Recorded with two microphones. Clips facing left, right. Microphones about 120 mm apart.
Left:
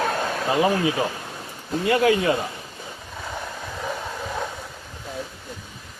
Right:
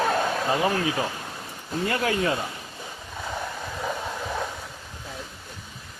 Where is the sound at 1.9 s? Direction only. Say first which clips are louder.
Left 8 dB; 20° left (ahead or behind).